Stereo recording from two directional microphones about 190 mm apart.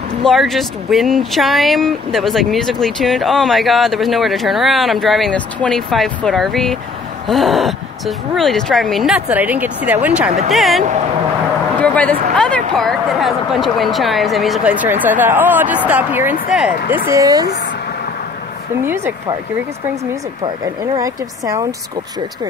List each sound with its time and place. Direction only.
0.2 s speech: centre (ahead or behind)
11.8 s speech: 5° left (ahead or behind)
17.1 s speech: 20° right (ahead or behind)
20.9 s speech: 20° right (ahead or behind)